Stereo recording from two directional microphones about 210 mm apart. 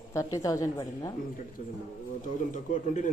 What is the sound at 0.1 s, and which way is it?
A woman's voice, 15° left (ahead or behind).